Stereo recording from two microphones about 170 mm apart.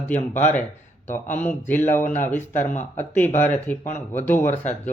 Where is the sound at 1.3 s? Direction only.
10° left (ahead or behind).